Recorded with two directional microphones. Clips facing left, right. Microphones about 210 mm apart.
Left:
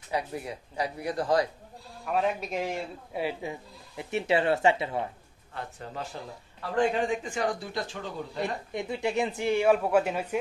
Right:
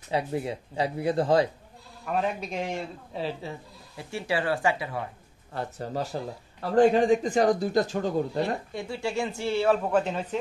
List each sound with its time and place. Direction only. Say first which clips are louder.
0.1 s speech: right 4 dB; 25° right (ahead or behind)
2.0 s speech: even; centre (ahead or behind)
3.1 s speech: left 2 dB; 10° left (ahead or behind)
5.5 s speech: right 6 dB; 40° right (ahead or behind)
8.4 s speech: right 3 dB; 20° left (ahead or behind)